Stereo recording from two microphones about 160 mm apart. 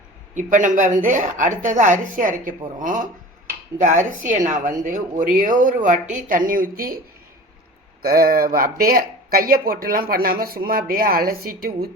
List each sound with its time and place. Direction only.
0.3 s speech: 55° right (ahead or behind)
8.0 s speech: 65° right (ahead or behind)